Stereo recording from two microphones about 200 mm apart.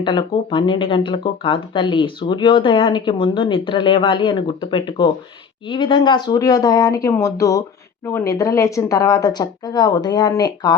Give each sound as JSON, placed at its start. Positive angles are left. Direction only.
{"t": 0.0, "sound": "speech", "side_deg": 25}